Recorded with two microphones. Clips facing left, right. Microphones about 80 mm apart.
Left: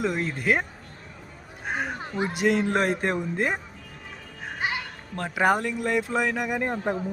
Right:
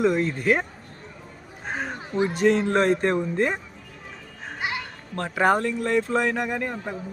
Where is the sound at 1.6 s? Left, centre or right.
Centre.